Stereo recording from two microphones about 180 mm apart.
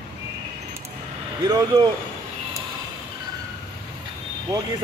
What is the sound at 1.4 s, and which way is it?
Speech, 20° right (ahead or behind).